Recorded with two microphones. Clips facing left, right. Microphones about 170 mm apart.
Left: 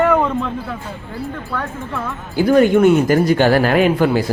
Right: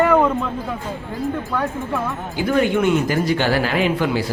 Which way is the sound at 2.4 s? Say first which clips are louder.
Left 6 dB; 40° left (ahead or behind).